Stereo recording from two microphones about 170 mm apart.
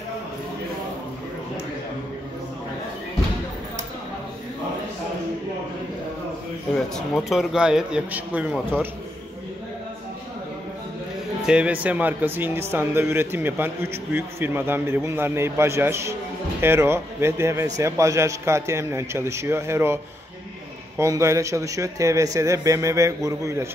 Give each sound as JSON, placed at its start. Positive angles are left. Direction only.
{"t": 6.7, "sound": "a man's voice", "side_deg": 0}
{"t": 11.4, "sound": "a man's voice", "side_deg": -5}
{"t": 21.0, "sound": "speech", "side_deg": -15}